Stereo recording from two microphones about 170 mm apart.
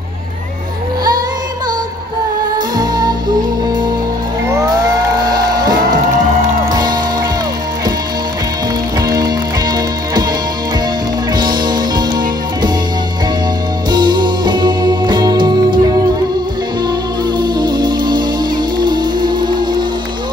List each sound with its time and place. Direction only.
2.8 s music: 25° right (ahead or behind)
5.2 s music: 25° right (ahead or behind)
9.0 s music: 20° right (ahead or behind)
11.3 s music: 25° right (ahead or behind)
13.8 s music: 25° right (ahead or behind)
17.4 s music: 25° right (ahead or behind)